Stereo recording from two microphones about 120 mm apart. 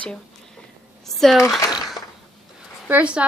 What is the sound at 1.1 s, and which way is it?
Speech, centre (ahead or behind).